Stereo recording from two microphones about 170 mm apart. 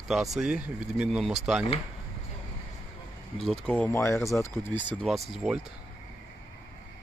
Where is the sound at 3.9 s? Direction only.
15° left (ahead or behind).